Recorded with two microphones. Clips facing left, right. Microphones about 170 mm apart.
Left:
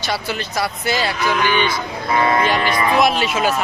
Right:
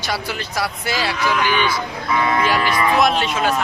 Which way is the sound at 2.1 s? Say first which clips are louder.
Left 2 dB; 35° left (ahead or behind).